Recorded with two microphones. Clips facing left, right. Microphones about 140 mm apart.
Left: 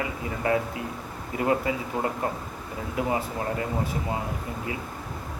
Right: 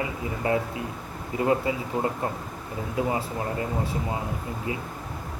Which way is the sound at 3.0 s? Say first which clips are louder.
Even; 25° right (ahead or behind).